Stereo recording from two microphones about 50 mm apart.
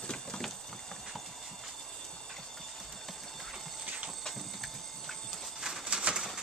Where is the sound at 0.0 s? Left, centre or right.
Centre.